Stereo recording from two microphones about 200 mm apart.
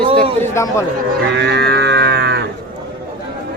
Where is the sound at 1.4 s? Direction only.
55° right (ahead or behind).